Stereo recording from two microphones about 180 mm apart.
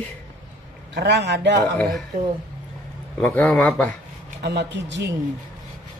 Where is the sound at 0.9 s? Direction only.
70° right (ahead or behind).